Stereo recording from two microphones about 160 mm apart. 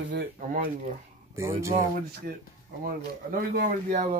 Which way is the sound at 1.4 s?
15° right (ahead or behind).